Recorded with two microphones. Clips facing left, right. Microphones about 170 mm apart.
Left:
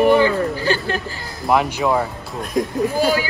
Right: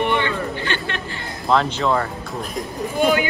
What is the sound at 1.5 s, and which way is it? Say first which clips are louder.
Speech: left 1 dB; 15° left (ahead or behind).